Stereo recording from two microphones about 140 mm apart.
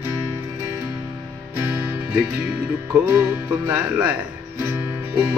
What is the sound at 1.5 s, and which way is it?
Music, 15° right (ahead or behind).